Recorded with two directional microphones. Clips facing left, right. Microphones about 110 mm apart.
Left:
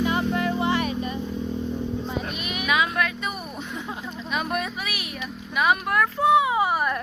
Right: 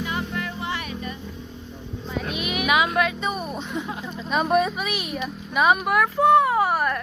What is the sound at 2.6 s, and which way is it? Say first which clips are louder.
Music: right 2 dB; 20° right (ahead or behind).